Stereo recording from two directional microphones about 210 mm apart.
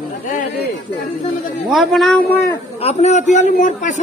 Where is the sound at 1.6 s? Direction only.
Centre (ahead or behind).